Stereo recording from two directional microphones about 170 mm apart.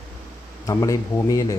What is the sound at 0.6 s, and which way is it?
Speech, 20° left (ahead or behind).